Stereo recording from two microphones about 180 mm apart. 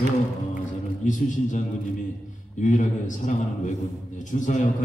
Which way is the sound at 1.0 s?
45° left (ahead or behind).